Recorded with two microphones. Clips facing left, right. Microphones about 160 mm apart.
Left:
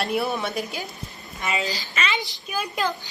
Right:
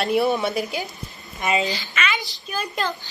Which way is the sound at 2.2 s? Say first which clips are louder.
Even; 20° left (ahead or behind).